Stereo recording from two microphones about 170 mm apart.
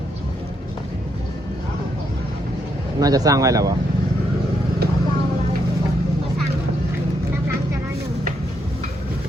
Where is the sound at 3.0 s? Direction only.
20° right (ahead or behind).